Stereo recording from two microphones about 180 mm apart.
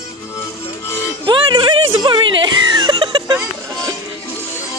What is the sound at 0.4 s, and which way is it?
Music, 15° left (ahead or behind).